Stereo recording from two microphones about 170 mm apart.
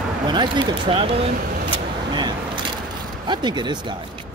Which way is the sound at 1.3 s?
55° right (ahead or behind).